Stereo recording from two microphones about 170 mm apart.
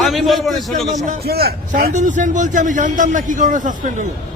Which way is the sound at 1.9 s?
45° right (ahead or behind).